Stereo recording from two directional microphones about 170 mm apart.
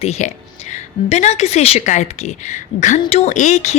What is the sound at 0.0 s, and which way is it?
Speech, 40° left (ahead or behind).